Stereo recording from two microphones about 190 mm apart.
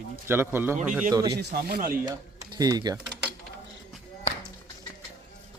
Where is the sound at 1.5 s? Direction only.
55° right (ahead or behind).